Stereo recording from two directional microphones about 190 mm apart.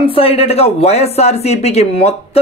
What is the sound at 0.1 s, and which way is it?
Speech, 30° left (ahead or behind).